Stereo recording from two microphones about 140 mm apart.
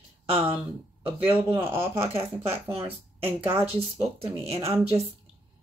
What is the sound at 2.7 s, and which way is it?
Speech, 45° right (ahead or behind).